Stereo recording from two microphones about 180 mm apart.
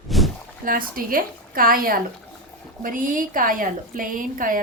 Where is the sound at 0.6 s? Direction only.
50° right (ahead or behind).